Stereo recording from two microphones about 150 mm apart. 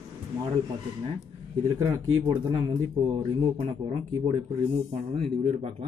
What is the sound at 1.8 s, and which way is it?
Speech, 25° right (ahead or behind).